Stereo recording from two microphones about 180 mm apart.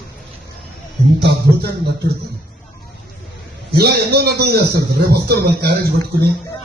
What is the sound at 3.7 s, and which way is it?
A man's voice, 60° right (ahead or behind).